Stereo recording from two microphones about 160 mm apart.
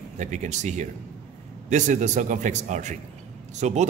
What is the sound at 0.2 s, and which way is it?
A man's voice, 50° right (ahead or behind).